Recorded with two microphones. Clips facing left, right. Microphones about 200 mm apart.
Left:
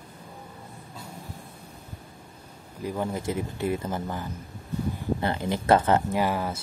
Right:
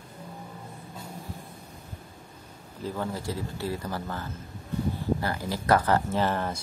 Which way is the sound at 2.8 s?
15° left (ahead or behind).